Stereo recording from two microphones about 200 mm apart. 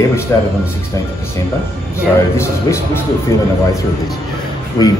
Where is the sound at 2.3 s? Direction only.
15° left (ahead or behind).